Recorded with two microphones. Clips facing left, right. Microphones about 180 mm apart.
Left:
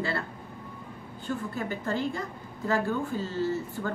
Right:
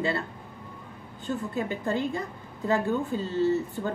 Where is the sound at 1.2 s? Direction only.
20° right (ahead or behind).